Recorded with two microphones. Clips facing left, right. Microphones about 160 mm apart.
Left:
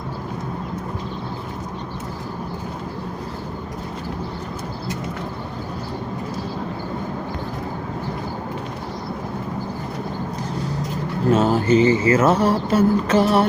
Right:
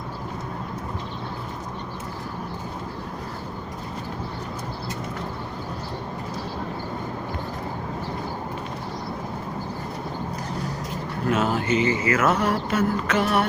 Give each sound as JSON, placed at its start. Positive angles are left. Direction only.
{"t": 11.3, "sound": "mantra", "side_deg": 30}